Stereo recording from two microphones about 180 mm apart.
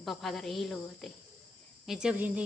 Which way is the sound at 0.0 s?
Centre (ahead or behind).